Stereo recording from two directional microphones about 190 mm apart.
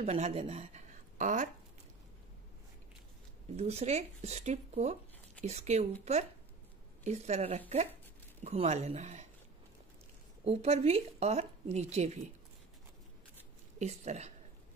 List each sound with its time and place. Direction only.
0.0 s speech: 35° right (ahead or behind)
3.5 s speech: 35° right (ahead or behind)
7.1 s speech: 35° right (ahead or behind)
10.4 s speech: 35° right (ahead or behind)
13.7 s speech: 35° right (ahead or behind)